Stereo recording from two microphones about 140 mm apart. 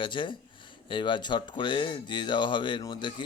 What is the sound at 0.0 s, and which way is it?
A man's voice, 35° left (ahead or behind).